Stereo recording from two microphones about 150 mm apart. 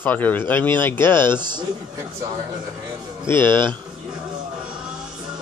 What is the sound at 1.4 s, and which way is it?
Speech, 30° right (ahead or behind).